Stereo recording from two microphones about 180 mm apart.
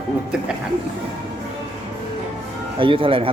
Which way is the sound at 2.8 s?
30° right (ahead or behind).